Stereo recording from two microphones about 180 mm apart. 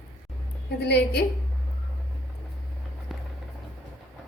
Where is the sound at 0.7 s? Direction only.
70° left (ahead or behind).